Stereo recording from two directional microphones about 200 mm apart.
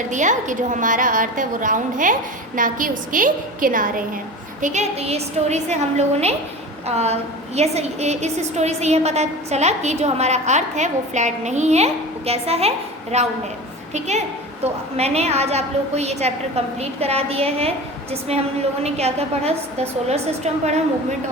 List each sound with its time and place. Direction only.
0.1 s a woman's voice: 40° right (ahead or behind)
18.8 s a woman's voice: 30° right (ahead or behind)